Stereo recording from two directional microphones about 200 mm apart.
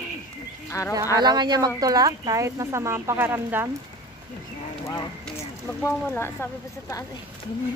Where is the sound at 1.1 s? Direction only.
20° right (ahead or behind).